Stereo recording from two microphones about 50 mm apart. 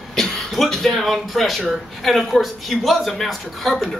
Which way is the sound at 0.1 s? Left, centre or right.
Centre.